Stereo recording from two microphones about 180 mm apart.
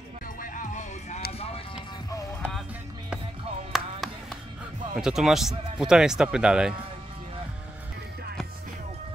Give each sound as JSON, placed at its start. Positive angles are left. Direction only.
{"t": 0.4, "sound": "music", "side_deg": 45}
{"t": 3.7, "sound": "music", "side_deg": 0}
{"t": 4.9, "sound": "speech", "side_deg": -5}